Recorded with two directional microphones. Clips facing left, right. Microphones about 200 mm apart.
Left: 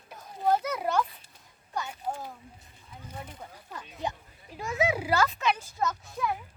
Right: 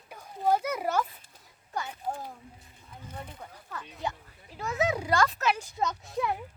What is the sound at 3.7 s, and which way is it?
Speech, 15° left (ahead or behind).